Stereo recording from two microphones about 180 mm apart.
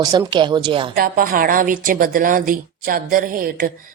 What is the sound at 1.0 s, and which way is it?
A woman's voice, 50° right (ahead or behind).